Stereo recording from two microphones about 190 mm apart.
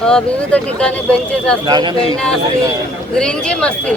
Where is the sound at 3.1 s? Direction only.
5° left (ahead or behind).